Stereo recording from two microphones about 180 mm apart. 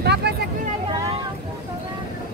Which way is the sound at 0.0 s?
70° right (ahead or behind).